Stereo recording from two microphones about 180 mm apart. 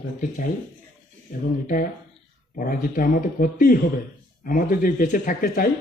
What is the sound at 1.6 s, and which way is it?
Speech, 50° left (ahead or behind).